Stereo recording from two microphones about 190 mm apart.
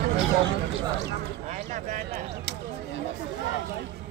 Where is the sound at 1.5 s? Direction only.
40° right (ahead or behind).